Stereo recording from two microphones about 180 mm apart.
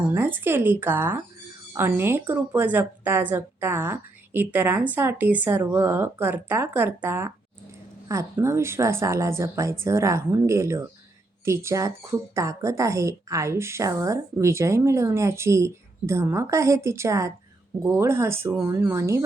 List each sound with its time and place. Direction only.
0.1 s speech: 10° right (ahead or behind)